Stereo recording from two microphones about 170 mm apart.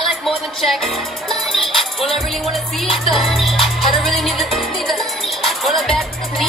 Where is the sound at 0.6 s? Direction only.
Centre (ahead or behind).